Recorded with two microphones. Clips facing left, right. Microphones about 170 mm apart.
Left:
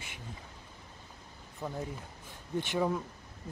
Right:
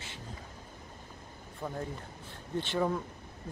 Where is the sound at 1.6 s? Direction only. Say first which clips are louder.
Even; centre (ahead or behind).